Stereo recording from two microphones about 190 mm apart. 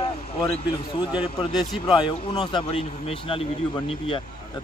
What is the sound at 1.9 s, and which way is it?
Speech, 25° left (ahead or behind).